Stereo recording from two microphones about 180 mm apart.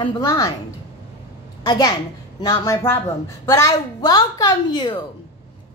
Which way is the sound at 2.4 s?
20° left (ahead or behind).